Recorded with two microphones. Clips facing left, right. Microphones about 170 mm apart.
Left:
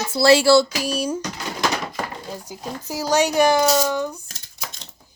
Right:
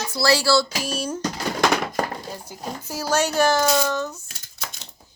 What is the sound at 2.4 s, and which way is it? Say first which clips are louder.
Speech: left 2 dB; 15° left (ahead or behind).